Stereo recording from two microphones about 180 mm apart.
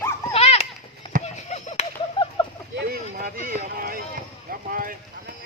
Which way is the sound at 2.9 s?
55° right (ahead or behind).